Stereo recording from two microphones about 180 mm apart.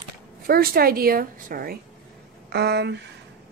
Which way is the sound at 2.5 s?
65° right (ahead or behind).